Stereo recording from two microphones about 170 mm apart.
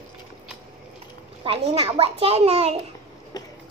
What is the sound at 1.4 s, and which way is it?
A child's voice, 35° right (ahead or behind).